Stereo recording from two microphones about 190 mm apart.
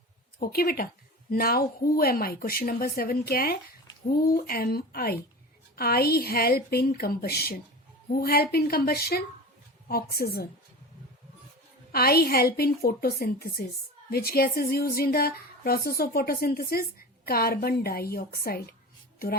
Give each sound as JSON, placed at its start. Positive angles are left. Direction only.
{"t": 0.3, "sound": "a woman's voice", "side_deg": 50}
{"t": 11.9, "sound": "speech", "side_deg": 55}